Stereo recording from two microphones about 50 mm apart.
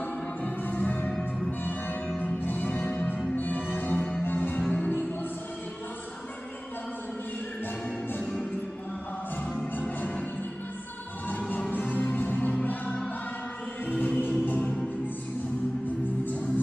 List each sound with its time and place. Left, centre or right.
0.4 s music: left
3.3 s music: left
4.6 s music: left
9.8 s music: left
11.2 s music: left